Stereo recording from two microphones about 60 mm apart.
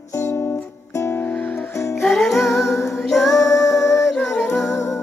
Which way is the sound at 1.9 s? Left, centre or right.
Centre.